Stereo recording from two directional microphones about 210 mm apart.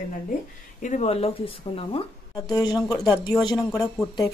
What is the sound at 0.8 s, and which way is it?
A woman's voice, 35° left (ahead or behind).